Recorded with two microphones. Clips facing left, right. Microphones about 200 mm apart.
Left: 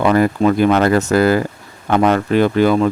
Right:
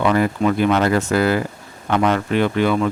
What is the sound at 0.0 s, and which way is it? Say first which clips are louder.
Speech: left 4 dB; 45° left (ahead or behind).